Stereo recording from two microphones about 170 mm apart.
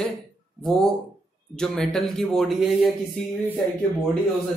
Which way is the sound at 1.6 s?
5° left (ahead or behind).